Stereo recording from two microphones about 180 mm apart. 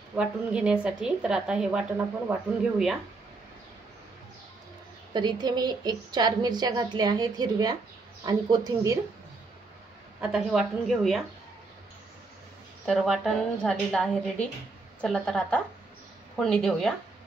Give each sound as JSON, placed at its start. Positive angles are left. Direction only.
{"t": 0.1, "sound": "a woman's voice", "side_deg": -5}
{"t": 5.1, "sound": "a woman's voice", "side_deg": -25}
{"t": 10.2, "sound": "a woman's voice", "side_deg": -5}
{"t": 12.8, "sound": "a woman's voice", "side_deg": 0}